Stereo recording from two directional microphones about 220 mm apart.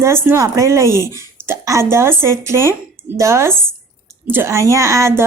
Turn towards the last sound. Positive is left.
turn(degrees=-15)  # may be behind; listen again after turning